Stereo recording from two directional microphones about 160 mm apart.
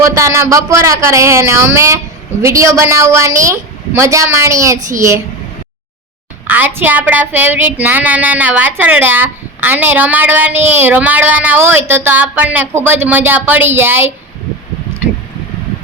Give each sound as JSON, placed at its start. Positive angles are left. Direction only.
{"t": 0.2, "sound": "a woman's voice", "side_deg": -15}
{"t": 6.5, "sound": "speech", "side_deg": -10}